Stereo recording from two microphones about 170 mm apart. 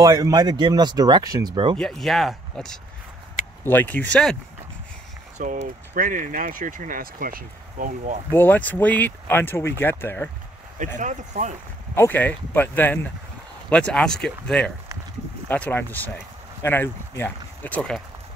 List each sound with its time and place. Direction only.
0.0 s speech: 20° right (ahead or behind)
1.8 s speech: centre (ahead or behind)
5.4 s speech: 50° right (ahead or behind)
8.3 s speech: 10° left (ahead or behind)
11.0 s speech: 45° right (ahead or behind)
11.9 s speech: 10° left (ahead or behind)